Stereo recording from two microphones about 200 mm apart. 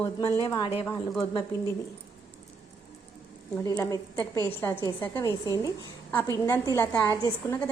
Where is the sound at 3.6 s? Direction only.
15° left (ahead or behind).